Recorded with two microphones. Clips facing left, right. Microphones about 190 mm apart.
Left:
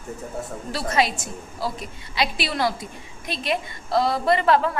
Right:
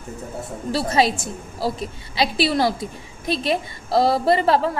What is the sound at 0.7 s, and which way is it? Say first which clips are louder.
A woman's voice: right 4 dB; 30° right (ahead or behind).